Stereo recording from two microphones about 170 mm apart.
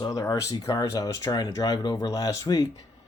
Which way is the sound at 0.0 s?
20° left (ahead or behind).